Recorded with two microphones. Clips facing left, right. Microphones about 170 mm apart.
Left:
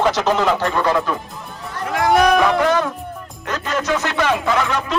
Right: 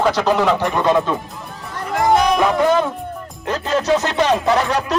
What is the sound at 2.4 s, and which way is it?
Speech, 20° right (ahead or behind).